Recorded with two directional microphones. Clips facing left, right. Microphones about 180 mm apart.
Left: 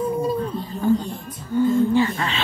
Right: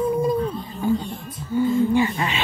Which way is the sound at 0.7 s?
45° left (ahead or behind).